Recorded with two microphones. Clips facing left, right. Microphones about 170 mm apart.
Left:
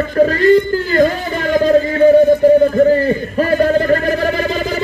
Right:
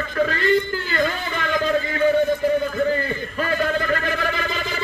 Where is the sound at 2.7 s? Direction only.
40° left (ahead or behind).